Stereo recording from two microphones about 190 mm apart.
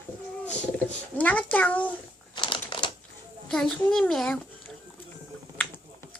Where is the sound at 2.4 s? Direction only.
25° left (ahead or behind).